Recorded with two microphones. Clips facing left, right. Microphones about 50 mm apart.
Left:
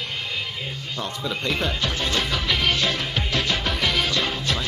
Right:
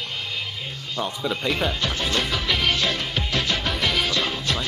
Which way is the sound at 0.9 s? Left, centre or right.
Centre.